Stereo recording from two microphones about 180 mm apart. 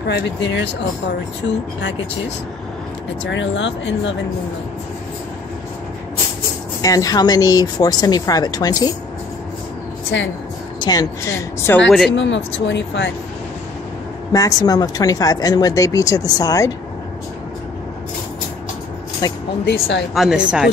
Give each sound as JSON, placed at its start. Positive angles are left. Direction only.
{"t": 0.0, "sound": "speech", "side_deg": 75}
{"t": 3.3, "sound": "speech", "side_deg": 90}
{"t": 6.8, "sound": "speech", "side_deg": 20}
{"t": 10.1, "sound": "speech", "side_deg": 85}
{"t": 10.8, "sound": "speech", "side_deg": 20}
{"t": 12.1, "sound": "speech", "side_deg": 90}
{"t": 14.3, "sound": "speech", "side_deg": 20}
{"t": 19.2, "sound": "speech", "side_deg": 20}
{"t": 19.6, "sound": "speech", "side_deg": 70}
{"t": 20.2, "sound": "a woman's voice", "side_deg": -5}